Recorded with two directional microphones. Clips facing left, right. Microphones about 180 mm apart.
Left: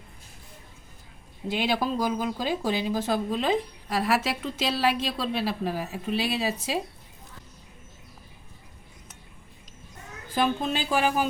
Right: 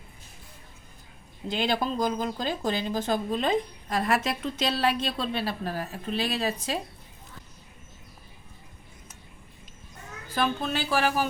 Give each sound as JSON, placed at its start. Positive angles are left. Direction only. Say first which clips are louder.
{"t": 1.5, "sound": "speech", "louder": "left 1 dB", "side_deg": 5}
{"t": 10.3, "sound": "speech", "louder": "left 2 dB", "side_deg": 15}